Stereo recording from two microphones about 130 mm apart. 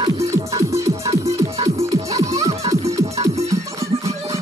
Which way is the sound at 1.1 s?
50° right (ahead or behind).